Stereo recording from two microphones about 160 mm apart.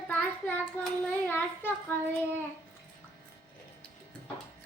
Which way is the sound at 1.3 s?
15° left (ahead or behind).